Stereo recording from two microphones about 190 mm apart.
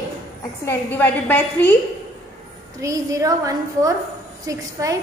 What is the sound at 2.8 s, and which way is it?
A woman's voice, 15° right (ahead or behind).